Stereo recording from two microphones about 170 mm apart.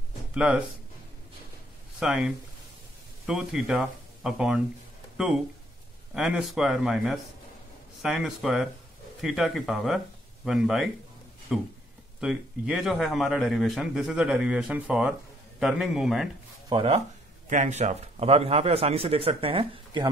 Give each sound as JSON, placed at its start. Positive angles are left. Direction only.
{"t": 0.3, "sound": "speech", "side_deg": -5}
{"t": 2.0, "sound": "a man's voice", "side_deg": -5}
{"t": 16.6, "sound": "speech", "side_deg": -30}
{"t": 17.5, "sound": "a man's voice", "side_deg": -45}